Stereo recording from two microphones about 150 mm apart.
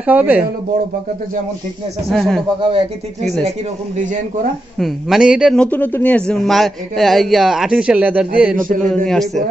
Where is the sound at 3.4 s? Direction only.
45° right (ahead or behind).